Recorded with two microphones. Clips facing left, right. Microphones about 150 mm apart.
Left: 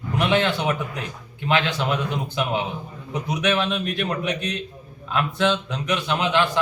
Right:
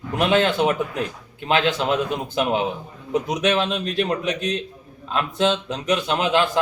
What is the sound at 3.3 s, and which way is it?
Speech, 35° right (ahead or behind).